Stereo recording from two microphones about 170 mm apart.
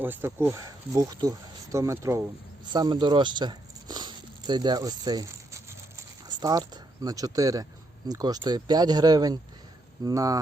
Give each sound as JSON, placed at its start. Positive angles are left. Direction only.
{"t": 0.0, "sound": "speech", "side_deg": -10}